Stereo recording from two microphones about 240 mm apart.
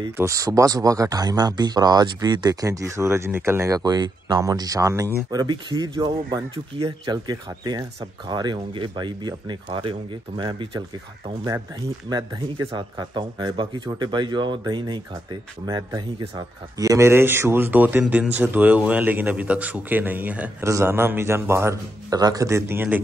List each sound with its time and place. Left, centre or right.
0.0 s speech: centre
12.1 s speech: centre